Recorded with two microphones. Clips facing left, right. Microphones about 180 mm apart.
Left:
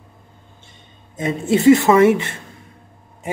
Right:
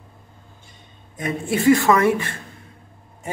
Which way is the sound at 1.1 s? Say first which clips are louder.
Left 5 dB; 25° left (ahead or behind).